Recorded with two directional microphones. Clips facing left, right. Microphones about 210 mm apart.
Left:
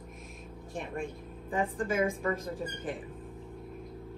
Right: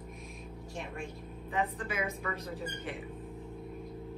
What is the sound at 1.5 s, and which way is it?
A woman's voice, 50° left (ahead or behind).